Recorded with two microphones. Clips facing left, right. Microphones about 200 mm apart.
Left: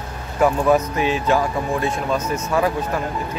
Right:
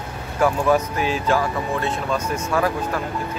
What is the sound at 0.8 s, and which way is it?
Speech, centre (ahead or behind).